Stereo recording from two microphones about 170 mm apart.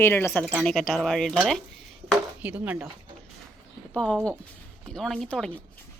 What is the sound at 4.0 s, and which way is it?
Speech, 5° left (ahead or behind).